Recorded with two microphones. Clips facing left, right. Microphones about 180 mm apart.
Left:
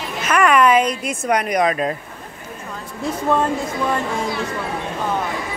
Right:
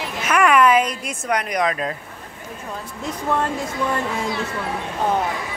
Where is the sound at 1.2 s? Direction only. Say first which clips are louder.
Left 3 dB; 20° left (ahead or behind).